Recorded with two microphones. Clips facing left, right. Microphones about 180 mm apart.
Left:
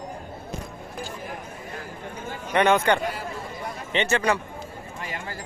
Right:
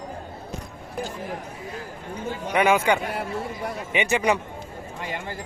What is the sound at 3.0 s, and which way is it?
Speech, 60° right (ahead or behind).